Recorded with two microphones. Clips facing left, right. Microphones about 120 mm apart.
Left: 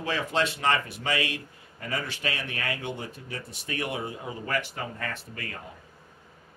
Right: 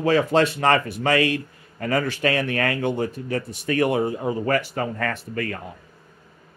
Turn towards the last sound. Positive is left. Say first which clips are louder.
# right 10 dB
turn(degrees=-65)  # may be behind; listen again after turning